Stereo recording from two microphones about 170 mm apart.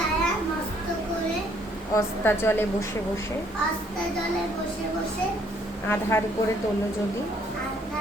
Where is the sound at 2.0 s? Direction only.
15° left (ahead or behind).